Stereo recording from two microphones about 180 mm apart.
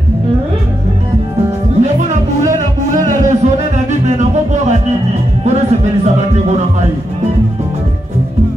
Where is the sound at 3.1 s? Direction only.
40° right (ahead or behind).